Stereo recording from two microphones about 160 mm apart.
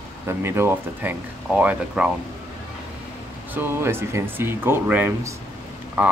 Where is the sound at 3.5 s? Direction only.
15° right (ahead or behind).